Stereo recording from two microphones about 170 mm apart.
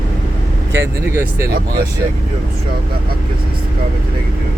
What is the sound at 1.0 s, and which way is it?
Speech, 15° right (ahead or behind).